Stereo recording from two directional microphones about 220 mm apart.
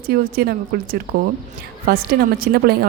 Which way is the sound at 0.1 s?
40° right (ahead or behind).